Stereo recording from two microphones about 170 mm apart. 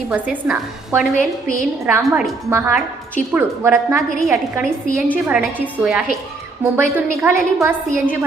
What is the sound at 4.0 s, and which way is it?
A woman's voice, centre (ahead or behind).